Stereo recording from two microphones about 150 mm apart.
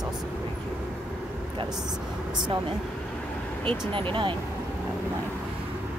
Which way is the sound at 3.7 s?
35° right (ahead or behind).